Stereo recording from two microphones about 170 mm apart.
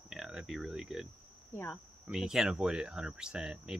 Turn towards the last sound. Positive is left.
turn(degrees=-5)  # may be behind; listen again after turning